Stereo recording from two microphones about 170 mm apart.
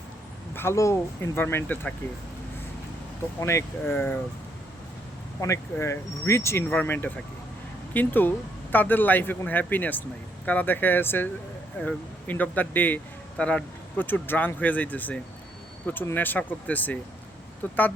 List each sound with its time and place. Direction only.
0.5 s a man's voice: 15° left (ahead or behind)
3.4 s a man's voice: 15° left (ahead or behind)
5.4 s a man's voice: 15° left (ahead or behind)